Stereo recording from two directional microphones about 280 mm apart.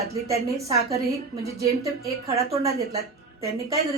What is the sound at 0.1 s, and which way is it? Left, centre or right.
A woman's voice, centre.